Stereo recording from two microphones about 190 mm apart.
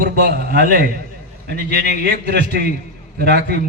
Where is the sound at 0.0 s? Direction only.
60° right (ahead or behind).